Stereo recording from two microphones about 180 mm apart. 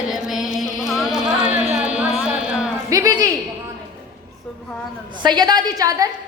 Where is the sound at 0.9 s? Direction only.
Centre (ahead or behind).